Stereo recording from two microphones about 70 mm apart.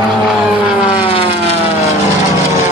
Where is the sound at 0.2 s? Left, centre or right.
Centre.